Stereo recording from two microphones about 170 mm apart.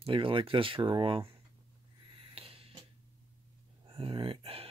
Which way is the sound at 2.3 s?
35° right (ahead or behind).